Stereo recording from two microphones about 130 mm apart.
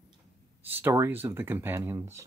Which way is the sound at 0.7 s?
15° right (ahead or behind).